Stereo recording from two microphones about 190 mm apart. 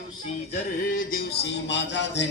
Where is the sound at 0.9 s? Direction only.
50° left (ahead or behind).